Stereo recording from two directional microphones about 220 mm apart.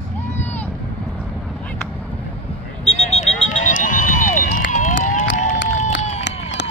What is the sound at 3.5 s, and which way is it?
Run, 35° left (ahead or behind).